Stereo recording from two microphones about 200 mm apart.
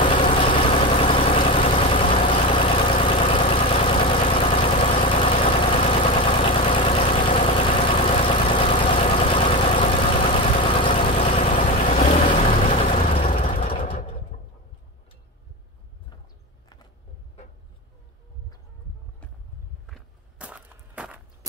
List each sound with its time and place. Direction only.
0.0 s vehicle: 25° left (ahead or behind)
11.5 s vehicle: 40° left (ahead or behind)
13.3 s vehicle: 40° left (ahead or behind)
13.6 s a sound: 30° left (ahead or behind)
19.9 s walk: 5° right (ahead or behind)